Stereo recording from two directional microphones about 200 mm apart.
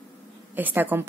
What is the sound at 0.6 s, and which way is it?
Speech, 10° right (ahead or behind).